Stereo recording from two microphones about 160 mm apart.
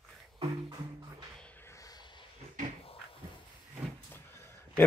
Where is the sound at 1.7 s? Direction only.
20° left (ahead or behind).